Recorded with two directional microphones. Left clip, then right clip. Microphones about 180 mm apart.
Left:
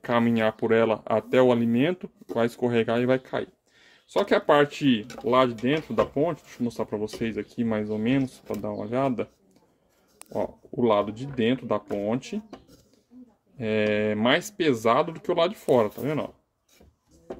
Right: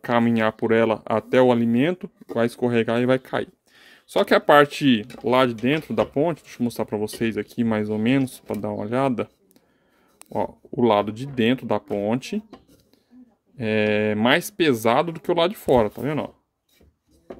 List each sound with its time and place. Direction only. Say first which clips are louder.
0.0 s speech: right 3 dB; 35° right (ahead or behind)
10.3 s speech: right 3 dB; 50° right (ahead or behind)
13.6 s speech: right 3 dB; 45° right (ahead or behind)